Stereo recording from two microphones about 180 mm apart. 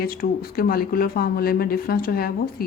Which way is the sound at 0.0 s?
55° left (ahead or behind).